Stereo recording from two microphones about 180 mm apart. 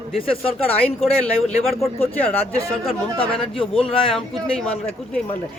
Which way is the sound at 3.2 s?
30° left (ahead or behind).